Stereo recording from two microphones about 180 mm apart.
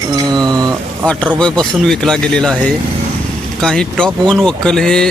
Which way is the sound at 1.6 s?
5° left (ahead or behind).